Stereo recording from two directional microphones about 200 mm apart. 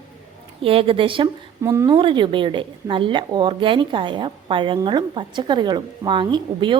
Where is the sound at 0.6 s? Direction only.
30° right (ahead or behind).